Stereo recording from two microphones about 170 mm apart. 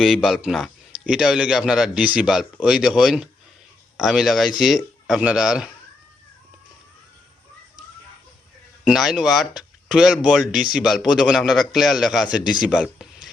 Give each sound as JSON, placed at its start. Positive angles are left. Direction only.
{"t": 0.0, "sound": "speech", "side_deg": 0}
{"t": 8.8, "sound": "speech", "side_deg": -5}